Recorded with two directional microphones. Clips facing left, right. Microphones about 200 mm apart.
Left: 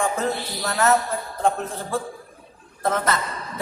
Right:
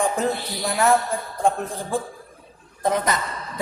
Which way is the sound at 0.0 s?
15° right (ahead or behind).